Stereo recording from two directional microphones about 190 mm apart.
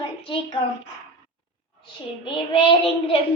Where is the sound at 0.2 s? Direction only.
30° left (ahead or behind).